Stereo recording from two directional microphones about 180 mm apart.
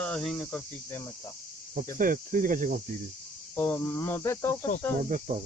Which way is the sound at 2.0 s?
50° right (ahead or behind).